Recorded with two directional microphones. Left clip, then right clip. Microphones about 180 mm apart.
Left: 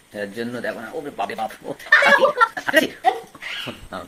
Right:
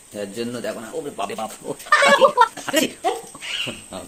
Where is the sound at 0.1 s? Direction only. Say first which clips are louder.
Even; 15° right (ahead or behind).